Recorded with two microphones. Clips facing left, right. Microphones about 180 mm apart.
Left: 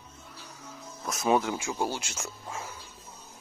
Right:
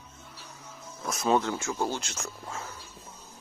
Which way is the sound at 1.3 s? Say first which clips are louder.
Even; 10° left (ahead or behind).